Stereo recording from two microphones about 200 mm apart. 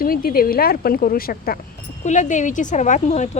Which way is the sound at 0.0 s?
45° left (ahead or behind).